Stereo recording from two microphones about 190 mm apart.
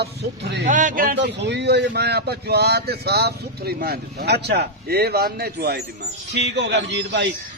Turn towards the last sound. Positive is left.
turn(degrees=-65)  # may be behind; listen again after turning